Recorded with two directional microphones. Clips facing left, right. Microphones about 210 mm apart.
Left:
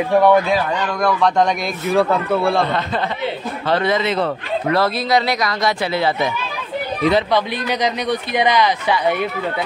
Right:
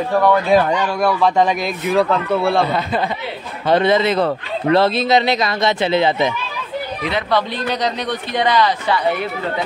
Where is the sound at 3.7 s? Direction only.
25° right (ahead or behind).